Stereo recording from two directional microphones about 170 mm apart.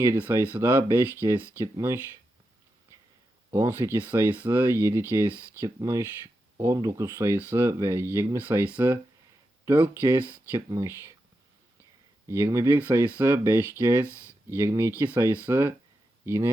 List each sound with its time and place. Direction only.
0.0 s speech: 15° right (ahead or behind)
3.5 s speech: 15° right (ahead or behind)
12.3 s speech: 15° right (ahead or behind)